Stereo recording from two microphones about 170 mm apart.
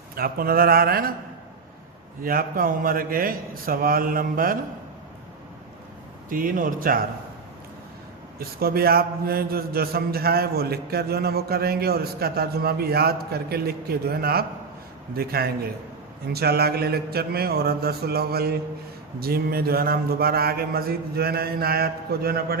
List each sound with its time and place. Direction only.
0.2 s a man's voice: 60° right (ahead or behind)
2.2 s a man's voice: 60° right (ahead or behind)
6.2 s a man's voice: 55° right (ahead or behind)
8.4 s a man's voice: 65° right (ahead or behind)
16.3 s mantra: 65° right (ahead or behind)
19.2 s a man's voice: 65° right (ahead or behind)